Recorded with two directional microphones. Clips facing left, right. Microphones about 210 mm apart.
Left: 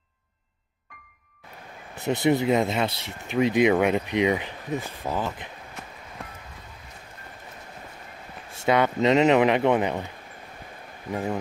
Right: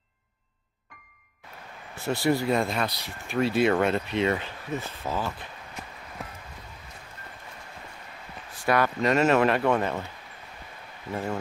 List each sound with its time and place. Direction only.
2.0 s speech: 20° left (ahead or behind)
8.5 s speech: 25° left (ahead or behind)
11.1 s speech: 15° left (ahead or behind)